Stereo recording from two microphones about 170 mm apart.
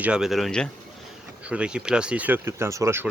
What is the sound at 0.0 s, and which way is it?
Speech, 5° right (ahead or behind).